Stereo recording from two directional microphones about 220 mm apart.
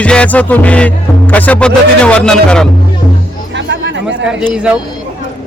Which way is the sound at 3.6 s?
55° right (ahead or behind).